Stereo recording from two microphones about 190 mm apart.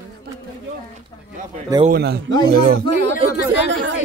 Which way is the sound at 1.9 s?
55° right (ahead or behind).